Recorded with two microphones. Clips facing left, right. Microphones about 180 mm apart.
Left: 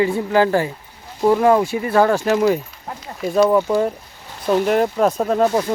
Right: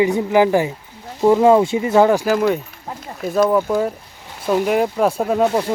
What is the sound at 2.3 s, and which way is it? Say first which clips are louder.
Speech: left 1 dB; centre (ahead or behind).